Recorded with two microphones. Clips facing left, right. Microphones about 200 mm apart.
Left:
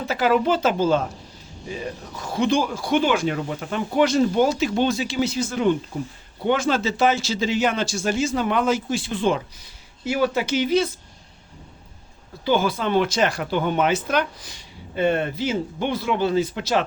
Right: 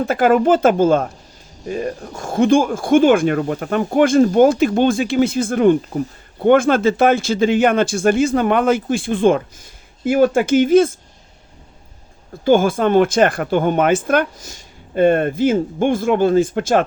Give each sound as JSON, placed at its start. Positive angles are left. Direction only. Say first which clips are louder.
{"t": 0.0, "sound": "speech", "louder": "right 6 dB", "side_deg": -50}
{"t": 12.5, "sound": "speech", "louder": "right 7 dB", "side_deg": -50}